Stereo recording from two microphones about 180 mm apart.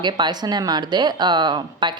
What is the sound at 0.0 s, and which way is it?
Speech, 25° right (ahead or behind).